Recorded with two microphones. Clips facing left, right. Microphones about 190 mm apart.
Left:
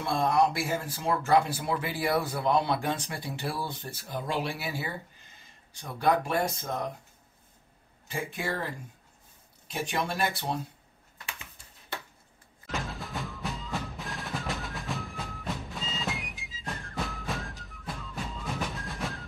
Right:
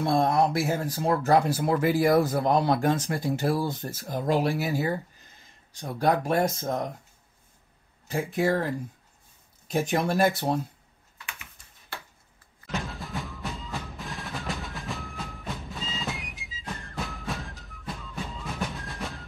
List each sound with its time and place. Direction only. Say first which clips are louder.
0.0 s speech: right 3 dB; 40° right (ahead or behind)
8.1 s speech: right 8 dB; 40° right (ahead or behind)
9.7 s speech: right 6 dB; 45° right (ahead or behind)
12.7 s music: right 2 dB; centre (ahead or behind)